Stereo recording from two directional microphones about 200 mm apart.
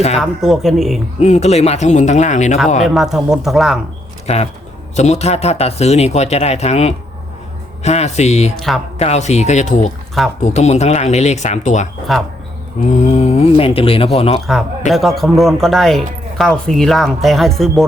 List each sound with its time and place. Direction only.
0.2 s speech: centre (ahead or behind)
1.2 s speech: 35° left (ahead or behind)
2.8 s speech: centre (ahead or behind)
4.3 s speech: 30° left (ahead or behind)
8.5 s speech: centre (ahead or behind)
9.0 s speech: 35° left (ahead or behind)
12.1 s speech: centre (ahead or behind)
12.9 s speech: 35° left (ahead or behind)
14.4 s speech: centre (ahead or behind)